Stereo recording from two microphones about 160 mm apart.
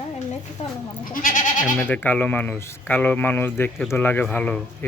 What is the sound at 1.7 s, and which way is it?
Speech, 10° left (ahead or behind).